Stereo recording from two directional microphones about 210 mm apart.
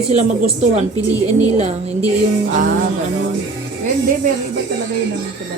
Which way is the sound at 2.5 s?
40° right (ahead or behind).